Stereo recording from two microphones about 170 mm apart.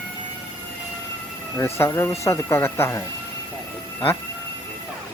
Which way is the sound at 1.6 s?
15° left (ahead or behind).